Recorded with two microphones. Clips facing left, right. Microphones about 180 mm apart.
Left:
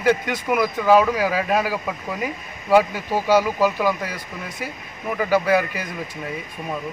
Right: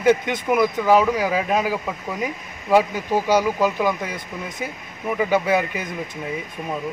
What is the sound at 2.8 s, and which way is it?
A man's voice, 15° right (ahead or behind).